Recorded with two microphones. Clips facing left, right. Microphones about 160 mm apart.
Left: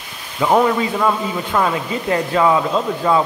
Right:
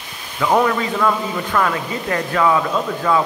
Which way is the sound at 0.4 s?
15° left (ahead or behind).